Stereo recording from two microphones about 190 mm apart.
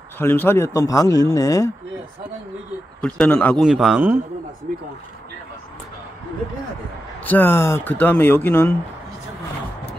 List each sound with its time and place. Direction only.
0.2 s speech: 10° left (ahead or behind)
3.0 s a man's voice: 5° left (ahead or behind)
7.2 s speech: 10° left (ahead or behind)